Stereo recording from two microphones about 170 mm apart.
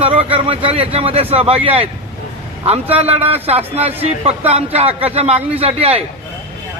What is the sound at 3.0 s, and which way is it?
Speech, 35° right (ahead or behind).